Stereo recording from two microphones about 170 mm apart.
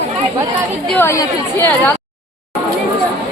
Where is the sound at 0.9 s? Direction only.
10° left (ahead or behind).